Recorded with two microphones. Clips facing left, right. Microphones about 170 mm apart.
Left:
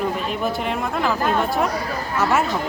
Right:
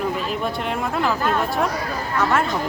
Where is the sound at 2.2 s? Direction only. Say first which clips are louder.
Left 1 dB; 10° left (ahead or behind).